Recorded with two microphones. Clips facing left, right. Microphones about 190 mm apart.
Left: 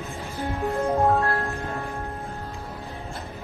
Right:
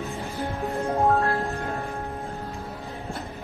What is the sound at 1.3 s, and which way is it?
Music, 15° right (ahead or behind).